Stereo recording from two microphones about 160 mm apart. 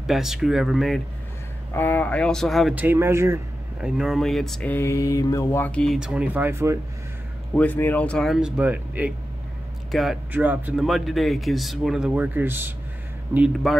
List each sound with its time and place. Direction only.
0.0 s speech: centre (ahead or behind)
1.7 s mantra: 10° left (ahead or behind)
2.7 s speech: 10° right (ahead or behind)
3.8 s mantra: 5° right (ahead or behind)
5.9 s speech: 5° right (ahead or behind)
7.5 s speech: 10° left (ahead or behind); by 13.5 s 10° right (ahead or behind)